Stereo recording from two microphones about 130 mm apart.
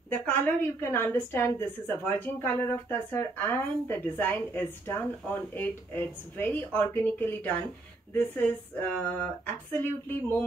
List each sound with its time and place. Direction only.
0.1 s a woman's voice: 10° left (ahead or behind)